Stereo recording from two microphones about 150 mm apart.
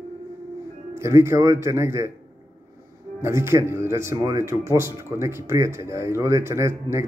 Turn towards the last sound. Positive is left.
turn(degrees=-20)  # may be behind; listen again after turning